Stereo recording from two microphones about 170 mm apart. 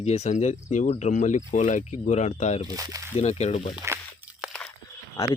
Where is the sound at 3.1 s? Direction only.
40° left (ahead or behind).